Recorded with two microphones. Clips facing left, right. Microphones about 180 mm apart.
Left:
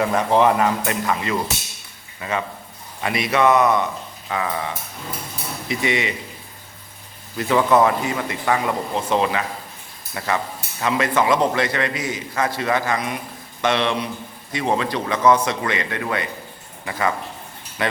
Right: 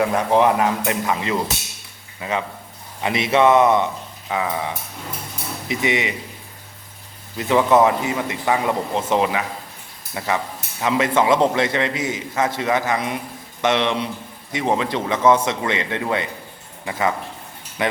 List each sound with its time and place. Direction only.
0.0 s speech: 5° right (ahead or behind)
3.0 s speech: 25° right (ahead or behind)
4.3 s speech: 10° right (ahead or behind)
7.3 s speech: 20° right (ahead or behind)
17.8 s speech: 15° right (ahead or behind)